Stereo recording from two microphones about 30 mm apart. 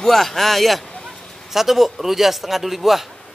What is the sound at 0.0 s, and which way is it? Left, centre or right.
Speech, centre.